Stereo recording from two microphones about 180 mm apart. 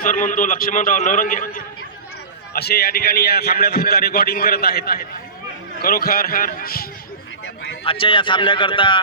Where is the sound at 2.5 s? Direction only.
60° left (ahead or behind).